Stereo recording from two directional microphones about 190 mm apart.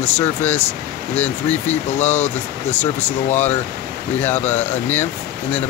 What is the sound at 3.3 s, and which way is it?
Speech, 10° left (ahead or behind).